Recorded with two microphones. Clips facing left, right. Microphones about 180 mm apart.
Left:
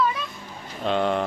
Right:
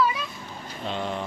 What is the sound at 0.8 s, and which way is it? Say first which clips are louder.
Vehicle: left 7 dB; 65° left (ahead or behind).